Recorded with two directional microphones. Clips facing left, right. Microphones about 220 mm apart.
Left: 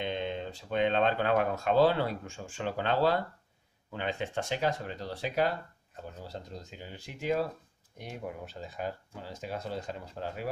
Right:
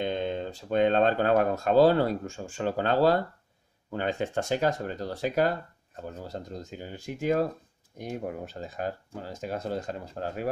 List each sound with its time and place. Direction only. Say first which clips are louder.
0.0 s speech: right 4 dB; 40° right (ahead or behind)